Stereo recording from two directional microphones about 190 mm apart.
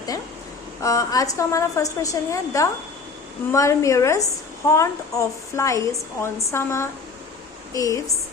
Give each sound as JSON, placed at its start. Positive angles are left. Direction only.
{"t": 0.8, "sound": "a woman's voice", "side_deg": 15}